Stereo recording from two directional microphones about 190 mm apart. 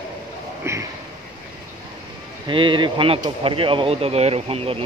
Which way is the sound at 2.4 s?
25° right (ahead or behind).